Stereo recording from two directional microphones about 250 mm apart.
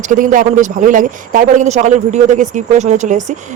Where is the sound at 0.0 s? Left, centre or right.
Right.